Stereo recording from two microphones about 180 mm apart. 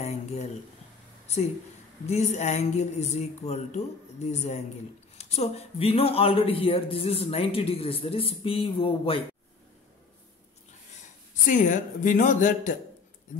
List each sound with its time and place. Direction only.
0.0 s a sound: 35° left (ahead or behind)
2.0 s speech: 40° left (ahead or behind)
11.4 s speech: 45° left (ahead or behind)